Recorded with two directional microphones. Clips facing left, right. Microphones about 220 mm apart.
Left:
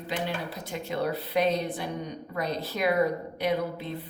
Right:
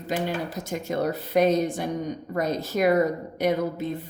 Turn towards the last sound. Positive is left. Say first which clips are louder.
# right 4 dB
turn(degrees=-45)  # may be behind; listen again after turning